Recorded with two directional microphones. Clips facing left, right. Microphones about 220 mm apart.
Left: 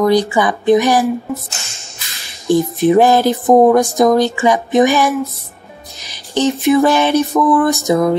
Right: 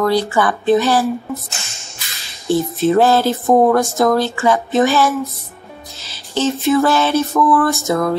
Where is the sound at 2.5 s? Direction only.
15° left (ahead or behind).